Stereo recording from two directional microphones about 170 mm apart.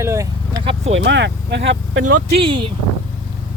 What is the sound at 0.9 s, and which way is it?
Speech, 90° right.